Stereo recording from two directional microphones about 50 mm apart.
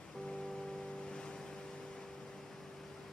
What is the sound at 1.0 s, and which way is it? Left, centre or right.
Waves, centre.